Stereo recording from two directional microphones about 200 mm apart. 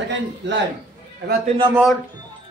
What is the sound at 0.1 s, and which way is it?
Speech, 60° right (ahead or behind).